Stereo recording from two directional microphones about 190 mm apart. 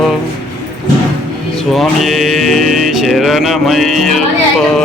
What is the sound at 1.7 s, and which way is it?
Music, centre (ahead or behind).